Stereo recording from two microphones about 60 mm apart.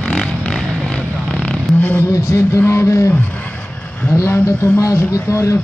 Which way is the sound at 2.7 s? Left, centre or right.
Left.